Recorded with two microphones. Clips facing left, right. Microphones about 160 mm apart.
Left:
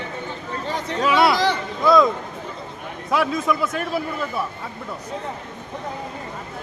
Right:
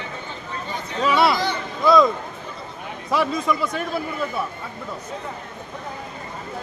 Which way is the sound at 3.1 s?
Centre (ahead or behind).